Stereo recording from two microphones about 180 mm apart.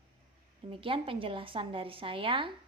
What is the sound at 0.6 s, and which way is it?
A woman's voice, 30° right (ahead or behind).